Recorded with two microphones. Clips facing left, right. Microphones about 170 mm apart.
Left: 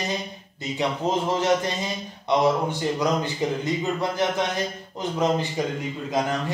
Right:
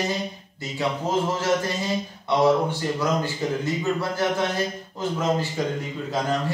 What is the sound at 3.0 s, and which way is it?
A man's voice, 20° left (ahead or behind).